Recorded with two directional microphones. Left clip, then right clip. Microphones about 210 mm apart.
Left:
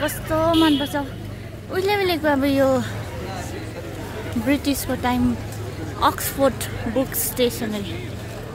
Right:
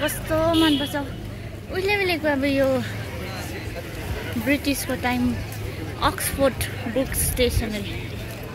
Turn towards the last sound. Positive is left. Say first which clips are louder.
# left 1 dB
turn(degrees=15)  # may be behind; listen again after turning